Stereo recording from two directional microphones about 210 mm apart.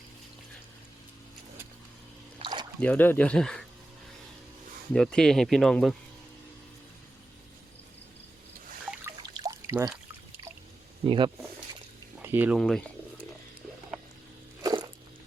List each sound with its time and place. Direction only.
2.4 s a sound: 20° right (ahead or behind)
2.8 s speech: 10° left (ahead or behind)
4.9 s speech: 5° left (ahead or behind)
9.3 s pour: 15° right (ahead or behind)
11.0 s speech: 20° right (ahead or behind)
12.2 s speech: 10° right (ahead or behind)
12.5 s speech: centre (ahead or behind)
14.6 s a sound: 20° right (ahead or behind)